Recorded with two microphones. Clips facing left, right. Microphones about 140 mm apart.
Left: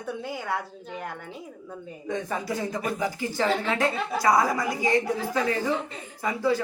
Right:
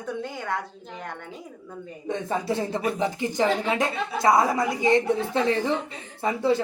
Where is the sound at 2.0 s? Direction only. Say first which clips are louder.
Right 3 dB; 25° right (ahead or behind).